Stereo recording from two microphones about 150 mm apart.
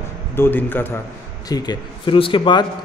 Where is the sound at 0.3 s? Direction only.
15° left (ahead or behind).